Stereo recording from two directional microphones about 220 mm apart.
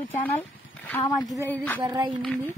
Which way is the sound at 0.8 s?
15° left (ahead or behind).